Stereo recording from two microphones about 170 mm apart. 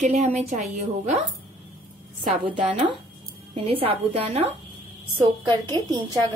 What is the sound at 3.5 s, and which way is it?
Speech, 35° right (ahead or behind).